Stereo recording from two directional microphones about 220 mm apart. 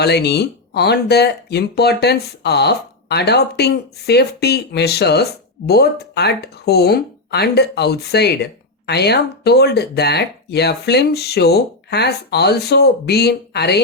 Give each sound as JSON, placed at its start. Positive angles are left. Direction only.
{"t": 0.0, "sound": "speech", "side_deg": 50}